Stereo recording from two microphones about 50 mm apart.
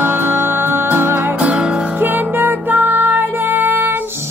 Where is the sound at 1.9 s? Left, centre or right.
Right.